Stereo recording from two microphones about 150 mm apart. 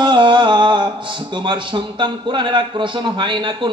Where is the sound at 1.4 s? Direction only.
30° right (ahead or behind).